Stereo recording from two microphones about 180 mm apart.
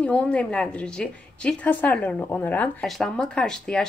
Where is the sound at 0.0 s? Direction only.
5° left (ahead or behind).